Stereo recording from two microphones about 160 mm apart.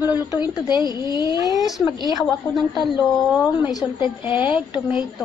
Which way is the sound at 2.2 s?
Centre (ahead or behind).